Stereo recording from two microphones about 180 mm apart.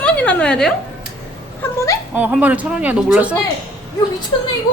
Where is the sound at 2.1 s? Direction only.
10° right (ahead or behind).